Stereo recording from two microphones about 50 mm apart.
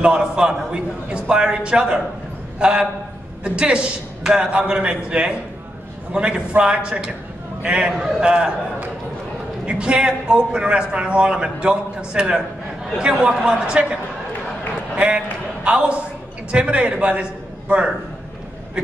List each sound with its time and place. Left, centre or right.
0.0 s a man's voice: centre
15.0 s a man's voice: right